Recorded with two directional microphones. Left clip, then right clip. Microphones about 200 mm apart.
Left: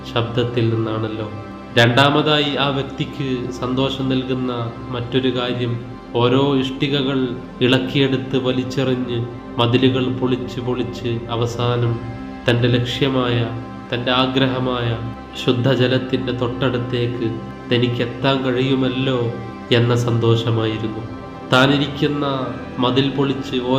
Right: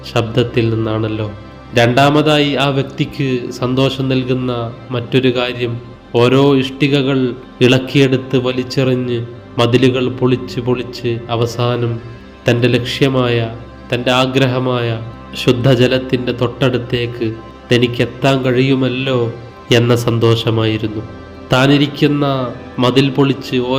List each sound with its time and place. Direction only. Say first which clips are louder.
0.1 s a man's voice: right 5 dB; 30° right (ahead or behind)